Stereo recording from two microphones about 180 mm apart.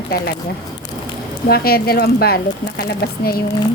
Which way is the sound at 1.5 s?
60° left (ahead or behind).